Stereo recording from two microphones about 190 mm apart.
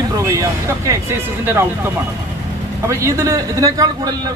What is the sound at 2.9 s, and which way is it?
A man's voice, 15° right (ahead or behind).